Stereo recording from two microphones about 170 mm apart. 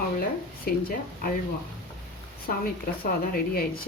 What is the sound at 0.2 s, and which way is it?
Speech, 60° left (ahead or behind).